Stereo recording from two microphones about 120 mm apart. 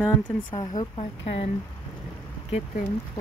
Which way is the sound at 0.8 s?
55° left (ahead or behind).